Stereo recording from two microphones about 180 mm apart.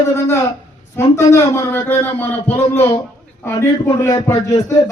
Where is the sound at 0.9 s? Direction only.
15° left (ahead or behind).